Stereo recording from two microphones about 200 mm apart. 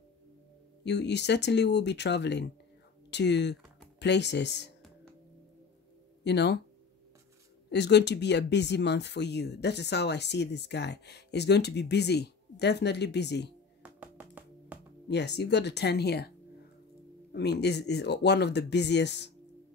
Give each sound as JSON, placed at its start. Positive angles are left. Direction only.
{"t": 0.8, "sound": "speech", "side_deg": 60}
{"t": 6.2, "sound": "speech", "side_deg": 55}
{"t": 7.7, "sound": "speech", "side_deg": 60}
{"t": 13.8, "sound": "music", "side_deg": -10}
{"t": 15.0, "sound": "speech", "side_deg": 60}
{"t": 17.3, "sound": "speech", "side_deg": 55}